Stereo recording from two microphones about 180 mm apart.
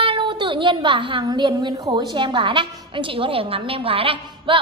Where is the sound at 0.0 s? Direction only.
25° right (ahead or behind).